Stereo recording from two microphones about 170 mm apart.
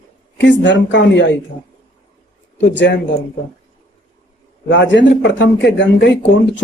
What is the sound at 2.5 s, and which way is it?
Speech, 90° left.